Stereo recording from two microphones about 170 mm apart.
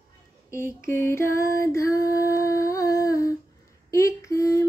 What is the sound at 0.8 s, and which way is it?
Female singing, 15° left (ahead or behind).